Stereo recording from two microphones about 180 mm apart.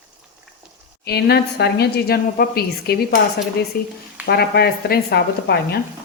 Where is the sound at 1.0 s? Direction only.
65° left (ahead or behind).